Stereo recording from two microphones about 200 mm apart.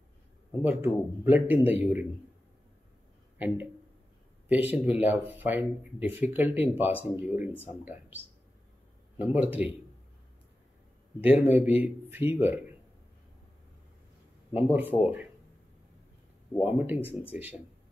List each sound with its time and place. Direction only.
0.7 s a man's voice: 10° right (ahead or behind)
3.3 s a man's voice: 10° right (ahead or behind)
9.2 s a man's voice: 10° right (ahead or behind)
11.1 s a man's voice: 10° right (ahead or behind)
14.5 s a man's voice: 10° right (ahead or behind)
16.6 s a man's voice: 10° right (ahead or behind)